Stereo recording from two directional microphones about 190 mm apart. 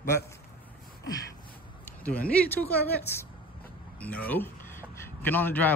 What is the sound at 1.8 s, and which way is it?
Speech, 10° left (ahead or behind).